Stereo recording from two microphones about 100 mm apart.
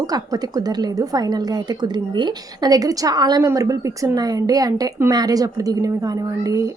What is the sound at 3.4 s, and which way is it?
Speech, 30° right (ahead or behind).